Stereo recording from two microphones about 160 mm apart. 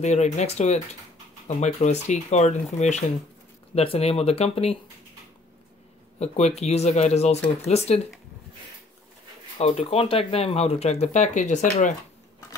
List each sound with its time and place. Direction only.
0.0 s speech: 45° left (ahead or behind)
6.1 s speech: 45° left (ahead or behind)
9.6 s speech: 40° left (ahead or behind)